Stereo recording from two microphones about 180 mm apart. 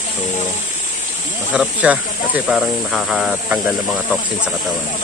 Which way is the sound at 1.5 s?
5° right (ahead or behind).